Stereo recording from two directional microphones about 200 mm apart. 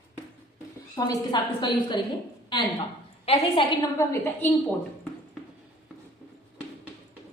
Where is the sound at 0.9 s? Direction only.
20° left (ahead or behind).